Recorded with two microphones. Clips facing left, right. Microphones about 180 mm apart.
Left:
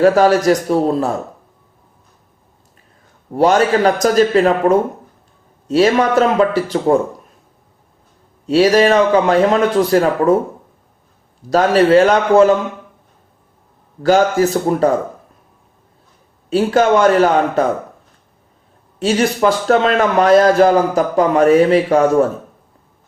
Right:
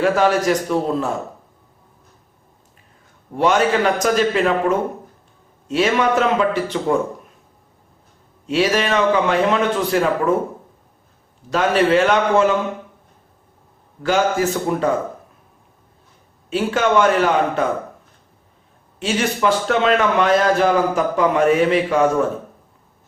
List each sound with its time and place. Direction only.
0.0 s a man's voice: 40° left (ahead or behind)
3.3 s a man's voice: 35° left (ahead or behind)
8.4 s a man's voice: 35° left (ahead or behind)
11.4 s a man's voice: 35° left (ahead or behind)
14.0 s a man's voice: 40° left (ahead or behind)
16.5 s a man's voice: 40° left (ahead or behind)
18.9 s a man's voice: 35° left (ahead or behind)